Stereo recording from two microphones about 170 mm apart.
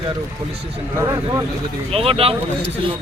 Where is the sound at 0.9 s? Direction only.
15° right (ahead or behind).